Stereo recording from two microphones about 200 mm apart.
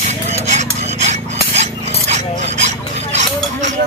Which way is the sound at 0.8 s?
35° right (ahead or behind).